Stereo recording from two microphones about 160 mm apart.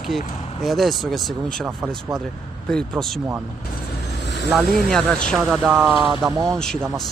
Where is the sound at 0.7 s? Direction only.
Centre (ahead or behind).